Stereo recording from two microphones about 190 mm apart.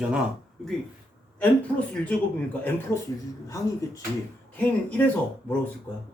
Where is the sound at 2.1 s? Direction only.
5° left (ahead or behind).